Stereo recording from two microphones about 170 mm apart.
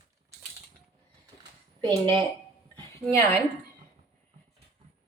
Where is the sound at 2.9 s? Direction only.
15° left (ahead or behind).